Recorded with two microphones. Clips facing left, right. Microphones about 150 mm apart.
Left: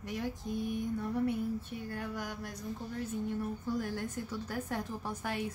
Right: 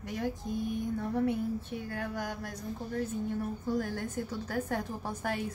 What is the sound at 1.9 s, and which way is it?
Speech, 50° right (ahead or behind).